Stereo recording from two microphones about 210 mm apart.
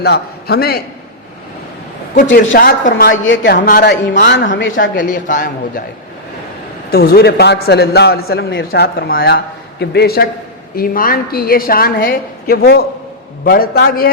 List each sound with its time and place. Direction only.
0.0 s a woman's voice: 50° left (ahead or behind)
2.2 s a man's voice: 60° left (ahead or behind)
2.6 s a woman's voice: 45° left (ahead or behind)
4.5 s a man's voice: 65° left (ahead or behind)
4.9 s a man's voice: 40° left (ahead or behind)
6.9 s a woman's voice: 45° left (ahead or behind)